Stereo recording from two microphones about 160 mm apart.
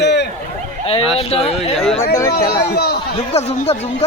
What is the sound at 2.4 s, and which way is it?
Speech, 20° left (ahead or behind).